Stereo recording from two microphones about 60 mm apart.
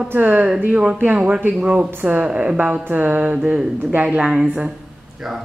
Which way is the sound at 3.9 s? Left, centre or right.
Right.